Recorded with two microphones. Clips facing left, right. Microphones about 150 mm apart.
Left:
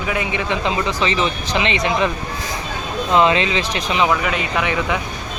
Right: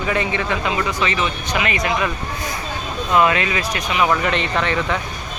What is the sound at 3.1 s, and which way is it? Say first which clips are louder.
Speech: left 1 dB; 25° left (ahead or behind).